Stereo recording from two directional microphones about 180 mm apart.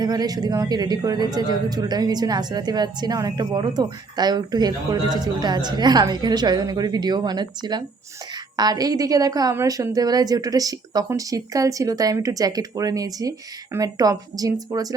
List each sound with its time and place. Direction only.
0.0 s a man's voice: 20° right (ahead or behind)